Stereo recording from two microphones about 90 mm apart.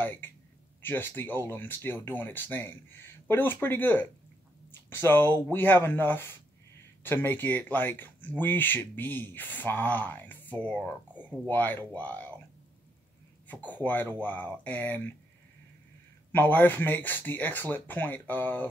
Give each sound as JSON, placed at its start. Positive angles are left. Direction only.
{"t": 0.0, "sound": "speech", "side_deg": 20}
{"t": 13.5, "sound": "speech", "side_deg": 20}
{"t": 16.3, "sound": "speech", "side_deg": 20}